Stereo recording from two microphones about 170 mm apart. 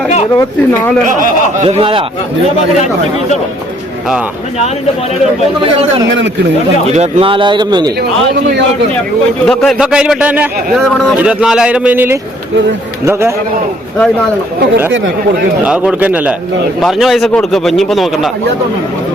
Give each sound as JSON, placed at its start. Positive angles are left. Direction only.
{"t": 0.3, "sound": "speech", "side_deg": 20}
{"t": 1.6, "sound": "a man's voice", "side_deg": -35}
{"t": 6.8, "sound": "speech", "side_deg": -40}
{"t": 9.5, "sound": "a man's voice", "side_deg": 0}
{"t": 15.6, "sound": "a man's voice", "side_deg": -5}